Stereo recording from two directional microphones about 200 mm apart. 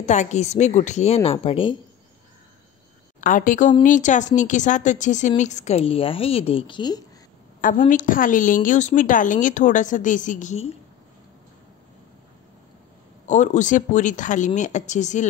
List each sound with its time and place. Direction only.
0.0 s a woman's voice: 35° left (ahead or behind)
3.2 s a woman's voice: 40° left (ahead or behind); by 7.1 s 20° left (ahead or behind)
7.6 s a woman's voice: 40° left (ahead or behind)
13.3 s a woman's voice: 40° left (ahead or behind)